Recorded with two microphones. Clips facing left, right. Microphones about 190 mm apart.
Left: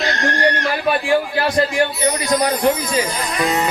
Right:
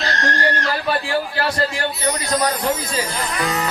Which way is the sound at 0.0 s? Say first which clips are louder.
Left 2 dB; 20° left (ahead or behind).